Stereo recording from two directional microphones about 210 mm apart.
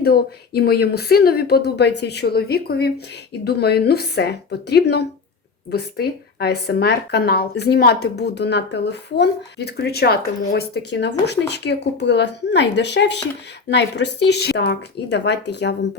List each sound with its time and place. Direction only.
0.0 s speech: 50° left (ahead or behind)